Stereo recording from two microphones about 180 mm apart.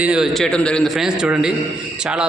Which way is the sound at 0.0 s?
5° right (ahead or behind).